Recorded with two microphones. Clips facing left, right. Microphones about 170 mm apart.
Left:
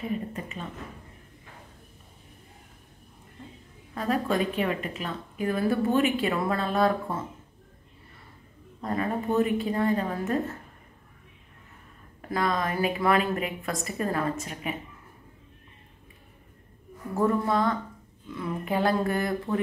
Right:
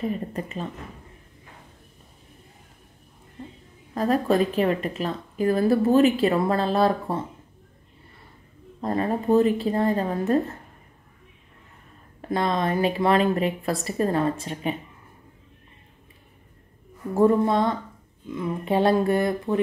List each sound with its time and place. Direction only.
3.9 s speech: 35° right (ahead or behind)
8.8 s speech: 35° right (ahead or behind)
12.3 s a woman's voice: 25° right (ahead or behind)
17.1 s a woman's voice: 30° right (ahead or behind)